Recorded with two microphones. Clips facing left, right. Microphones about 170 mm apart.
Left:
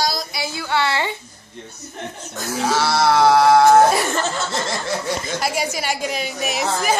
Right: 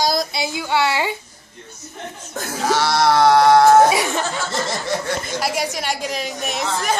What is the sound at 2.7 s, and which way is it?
Speech, centre (ahead or behind).